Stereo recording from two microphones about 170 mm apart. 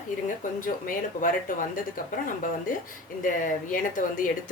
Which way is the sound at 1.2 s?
50° left (ahead or behind).